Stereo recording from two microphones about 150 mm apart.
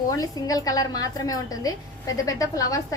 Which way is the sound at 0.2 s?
25° left (ahead or behind).